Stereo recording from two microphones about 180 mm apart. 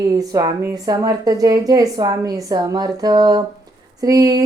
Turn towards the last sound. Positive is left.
turn(degrees=-20)  # may be behind; listen again after turning